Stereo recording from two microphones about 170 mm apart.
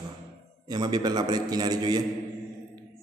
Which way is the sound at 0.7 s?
25° right (ahead or behind).